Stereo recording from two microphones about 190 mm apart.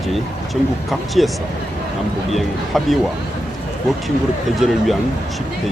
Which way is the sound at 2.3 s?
Centre (ahead or behind).